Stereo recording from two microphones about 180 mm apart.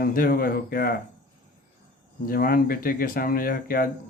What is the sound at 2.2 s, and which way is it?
Speech, 55° left (ahead or behind).